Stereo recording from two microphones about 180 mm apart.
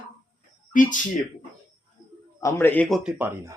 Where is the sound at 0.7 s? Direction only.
50° left (ahead or behind).